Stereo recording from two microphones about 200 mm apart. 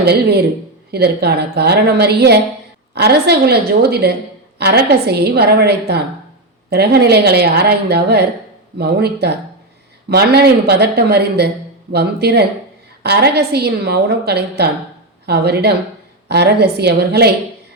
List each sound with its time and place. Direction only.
0.0 s a woman's voice: 55° right (ahead or behind)